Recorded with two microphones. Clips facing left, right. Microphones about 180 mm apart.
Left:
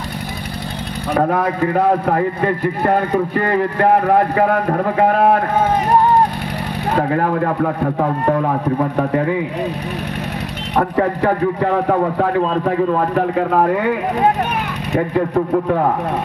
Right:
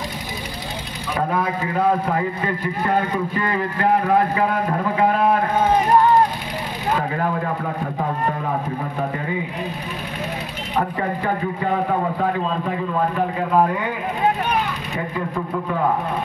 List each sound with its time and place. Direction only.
1.1 s a man's voice: 60° left (ahead or behind)
6.9 s a man's voice: 65° left (ahead or behind)
10.8 s a man's voice: 70° left (ahead or behind)